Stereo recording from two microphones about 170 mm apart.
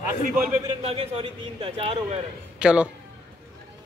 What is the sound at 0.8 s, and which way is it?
A man's voice, 35° right (ahead or behind).